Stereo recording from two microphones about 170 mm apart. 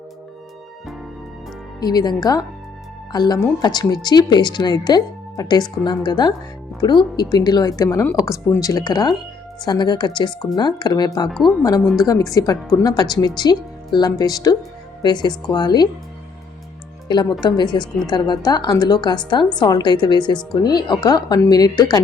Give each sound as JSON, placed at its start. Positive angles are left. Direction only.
{"t": 1.8, "sound": "a woman's voice", "side_deg": 25}
{"t": 11.3, "sound": "speech", "side_deg": 0}
{"t": 11.9, "sound": "a woman's voice", "side_deg": 20}
{"t": 17.1, "sound": "a woman's voice", "side_deg": 25}